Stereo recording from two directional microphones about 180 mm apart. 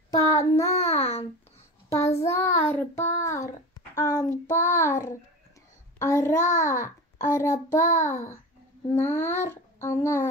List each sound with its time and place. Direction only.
0.1 s child singing: 20° left (ahead or behind)
0.8 s a child's voice: 35° left (ahead or behind)
1.9 s a child's voice: 15° left (ahead or behind)